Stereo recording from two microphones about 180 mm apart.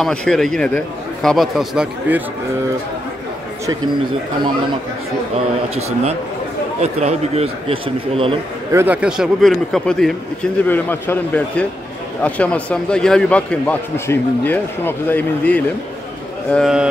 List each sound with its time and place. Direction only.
0.0 s speech: 5° left (ahead or behind)
5.8 s a man's voice: 35° right (ahead or behind)
8.7 s a man's voice: 10° right (ahead or behind)